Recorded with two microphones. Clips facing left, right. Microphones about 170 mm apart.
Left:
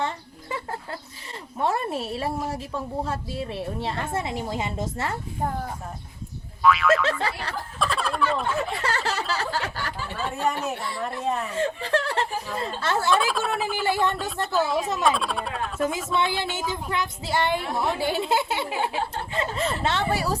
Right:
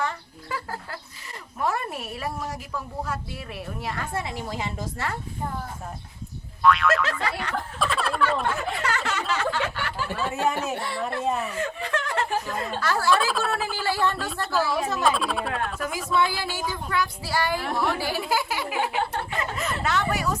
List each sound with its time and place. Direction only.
0.0 s a sound: 25° left (ahead or behind)
1.5 s a woman's voice: 25° left (ahead or behind)
6.6 s boing: centre (ahead or behind)
7.0 s a woman's voice: 30° left (ahead or behind)
7.9 s a sound: centre (ahead or behind)
8.7 s a sound: 30° left (ahead or behind)
10.0 s speech: 70° right (ahead or behind)
10.4 s speech: centre (ahead or behind)
11.5 s a woman's voice: 30° left (ahead or behind)
15.0 s speech: centre (ahead or behind)
15.8 s a woman's voice: 25° left (ahead or behind)